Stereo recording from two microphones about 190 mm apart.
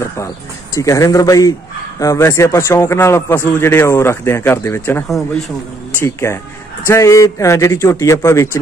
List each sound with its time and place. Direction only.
0.7 s a man's voice: 15° left (ahead or behind)